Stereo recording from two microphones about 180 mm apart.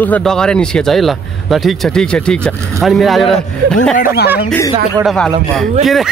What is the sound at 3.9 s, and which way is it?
Speech, 55° left (ahead or behind).